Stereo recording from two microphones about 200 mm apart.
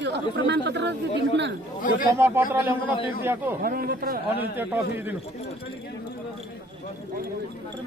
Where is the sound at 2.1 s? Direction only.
10° right (ahead or behind).